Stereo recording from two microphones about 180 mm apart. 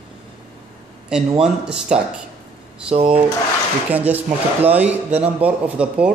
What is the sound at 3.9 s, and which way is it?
Speech, 10° right (ahead or behind).